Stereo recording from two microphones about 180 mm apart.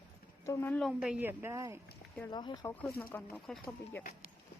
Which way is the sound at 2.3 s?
25° left (ahead or behind).